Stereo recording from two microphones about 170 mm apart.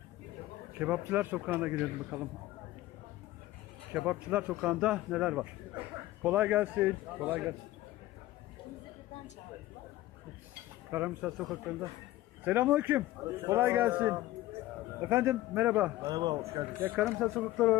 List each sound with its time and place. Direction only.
0.8 s a man's voice: 10° right (ahead or behind)
3.9 s a man's voice: 10° right (ahead or behind)
10.9 s a man's voice: 10° right (ahead or behind)
16.0 s a man's voice: 25° right (ahead or behind)
16.8 s a man's voice: 10° right (ahead or behind)
17.1 s speech: centre (ahead or behind)